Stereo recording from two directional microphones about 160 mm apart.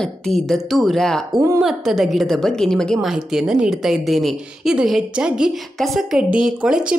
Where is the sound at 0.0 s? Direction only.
Centre (ahead or behind).